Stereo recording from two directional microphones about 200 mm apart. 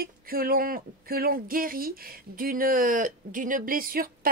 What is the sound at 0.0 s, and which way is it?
Speech, 45° right (ahead or behind).